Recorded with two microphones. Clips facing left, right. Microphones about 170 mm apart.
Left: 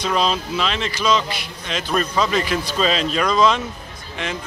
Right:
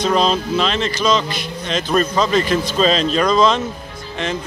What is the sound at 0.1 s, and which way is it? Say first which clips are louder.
Speech: right 2 dB; 35° right (ahead or behind).